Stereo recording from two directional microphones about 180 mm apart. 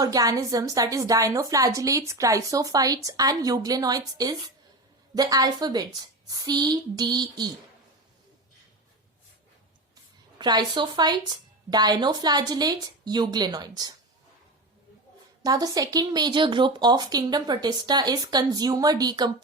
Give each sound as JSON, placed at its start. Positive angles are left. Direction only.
{"t": 0.0, "sound": "a woman's voice", "side_deg": -20}
{"t": 10.3, "sound": "a woman's voice", "side_deg": -25}
{"t": 15.4, "sound": "a woman's voice", "side_deg": -20}